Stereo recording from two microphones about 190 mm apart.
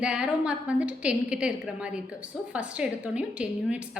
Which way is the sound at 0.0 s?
5° right (ahead or behind).